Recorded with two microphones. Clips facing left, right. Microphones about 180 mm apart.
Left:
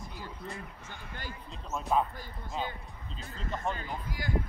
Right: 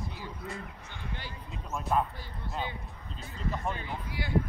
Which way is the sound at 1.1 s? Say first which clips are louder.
Right 1 dB; 45° left (ahead or behind).